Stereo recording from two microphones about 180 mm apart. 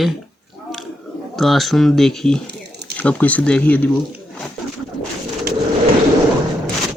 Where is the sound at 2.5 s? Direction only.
65° right (ahead or behind).